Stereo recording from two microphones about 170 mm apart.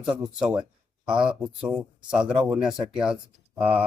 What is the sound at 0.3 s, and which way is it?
Speech, 5° right (ahead or behind).